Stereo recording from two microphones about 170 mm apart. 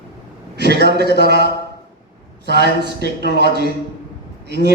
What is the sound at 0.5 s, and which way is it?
Speech, 80° right.